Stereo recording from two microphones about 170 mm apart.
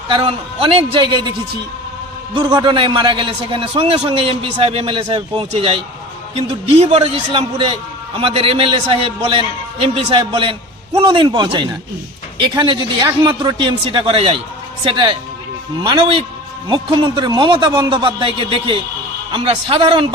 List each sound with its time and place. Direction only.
0.1 s a man's voice: 30° right (ahead or behind)
2.3 s a man's voice: 25° right (ahead or behind)